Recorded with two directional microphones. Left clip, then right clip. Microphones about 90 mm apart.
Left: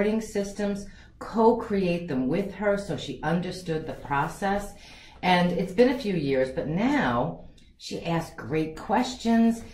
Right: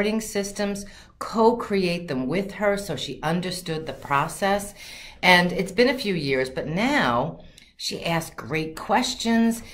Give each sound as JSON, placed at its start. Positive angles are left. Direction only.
{"t": 0.0, "sound": "speech", "side_deg": -15}